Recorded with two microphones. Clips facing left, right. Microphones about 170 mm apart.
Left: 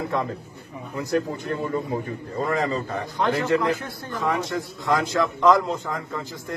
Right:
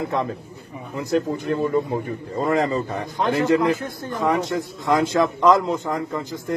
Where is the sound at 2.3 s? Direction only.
20° right (ahead or behind).